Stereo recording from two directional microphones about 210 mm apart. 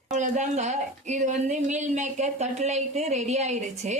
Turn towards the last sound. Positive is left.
turn(degrees=-30)  # may be behind; listen again after turning